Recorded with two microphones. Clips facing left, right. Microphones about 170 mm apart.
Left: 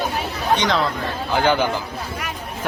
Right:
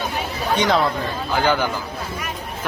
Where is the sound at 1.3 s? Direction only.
20° left (ahead or behind).